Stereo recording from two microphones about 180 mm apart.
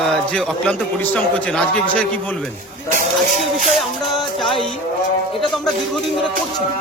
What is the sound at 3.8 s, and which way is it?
A man's voice, centre (ahead or behind).